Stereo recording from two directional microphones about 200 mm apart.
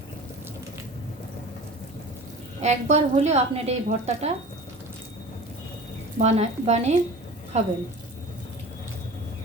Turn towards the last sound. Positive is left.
turn(degrees=-35)  # may be behind; listen again after turning